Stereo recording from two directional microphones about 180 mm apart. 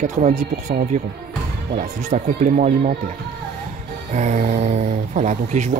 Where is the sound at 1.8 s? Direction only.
40° right (ahead or behind).